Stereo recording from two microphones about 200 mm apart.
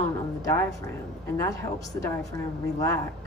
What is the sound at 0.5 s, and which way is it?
Speech, 15° left (ahead or behind).